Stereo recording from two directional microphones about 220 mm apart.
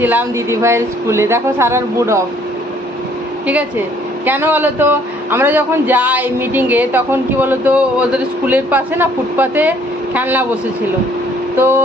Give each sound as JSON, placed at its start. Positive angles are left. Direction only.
{"t": 0.0, "sound": "speech", "side_deg": -10}
{"t": 4.3, "sound": "speech", "side_deg": -10}
{"t": 11.5, "sound": "speech", "side_deg": -10}